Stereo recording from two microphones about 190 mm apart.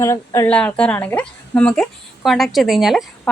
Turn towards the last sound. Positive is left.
turn(degrees=0)  # may be behind; listen again after turning